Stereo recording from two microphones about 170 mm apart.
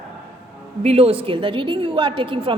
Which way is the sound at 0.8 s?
35° right (ahead or behind).